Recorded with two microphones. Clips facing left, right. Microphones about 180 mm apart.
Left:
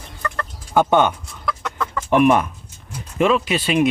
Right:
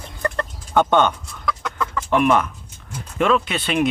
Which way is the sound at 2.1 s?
15° left (ahead or behind).